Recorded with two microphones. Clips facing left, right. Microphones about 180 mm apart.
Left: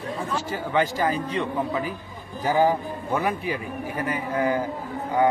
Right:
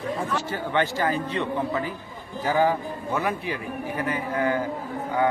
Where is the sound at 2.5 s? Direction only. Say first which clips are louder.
Left 1 dB; 15° left (ahead or behind).